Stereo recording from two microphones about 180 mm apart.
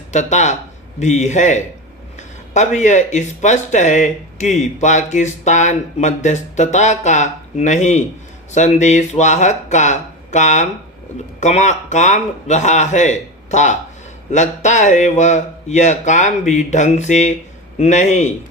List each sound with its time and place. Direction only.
0.1 s speech: 40° left (ahead or behind)